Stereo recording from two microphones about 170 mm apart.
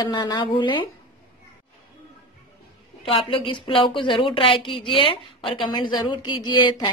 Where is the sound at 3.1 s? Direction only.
30° left (ahead or behind).